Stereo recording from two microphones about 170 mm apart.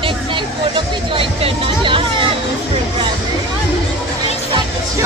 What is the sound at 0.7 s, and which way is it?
Hubbub, 30° right (ahead or behind).